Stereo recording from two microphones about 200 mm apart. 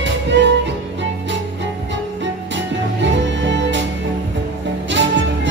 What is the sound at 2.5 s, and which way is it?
Music, 60° right (ahead or behind).